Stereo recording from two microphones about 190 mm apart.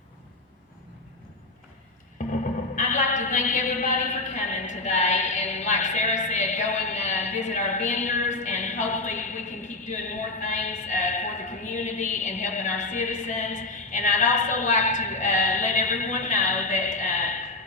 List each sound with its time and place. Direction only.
2.2 s music: 40° left (ahead or behind)
2.7 s a sound: 45° left (ahead or behind)
10.4 s a woman's voice: 40° left (ahead or behind)